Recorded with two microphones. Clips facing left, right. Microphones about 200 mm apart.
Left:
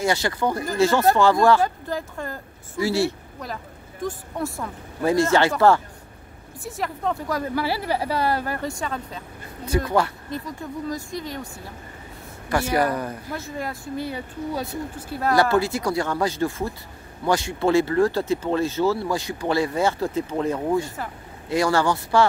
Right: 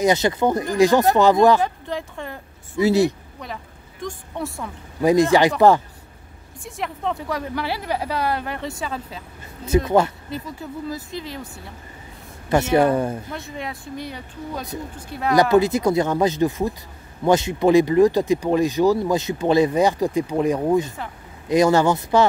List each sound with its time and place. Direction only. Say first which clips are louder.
0.0 s speech: right 5 dB; 20° right (ahead or behind)
1.6 s a woman's voice: even; centre (ahead or behind)
2.8 s speech: right 5 dB; 20° right (ahead or behind)
4.0 s a woman's voice: left 1 dB; centre (ahead or behind)
5.0 s speech: right 4 dB; 15° right (ahead or behind)
6.6 s a woman's voice: even; centre (ahead or behind)
9.7 s speech: right 4 dB; 20° right (ahead or behind)
10.3 s a woman's voice: even; 5° right (ahead or behind)
12.4 s speech: right 5 dB; 25° right (ahead or behind)
13.3 s a woman's voice: left 1 dB; centre (ahead or behind)
15.3 s speech: right 5 dB; 20° right (ahead or behind)